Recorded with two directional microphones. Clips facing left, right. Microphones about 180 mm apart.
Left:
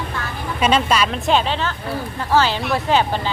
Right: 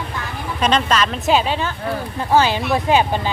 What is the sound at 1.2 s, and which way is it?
Speech, 10° right (ahead or behind).